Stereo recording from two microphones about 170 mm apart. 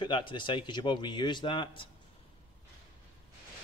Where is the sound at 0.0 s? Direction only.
30° left (ahead or behind).